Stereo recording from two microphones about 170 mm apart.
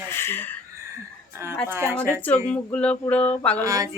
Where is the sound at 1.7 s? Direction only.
10° right (ahead or behind).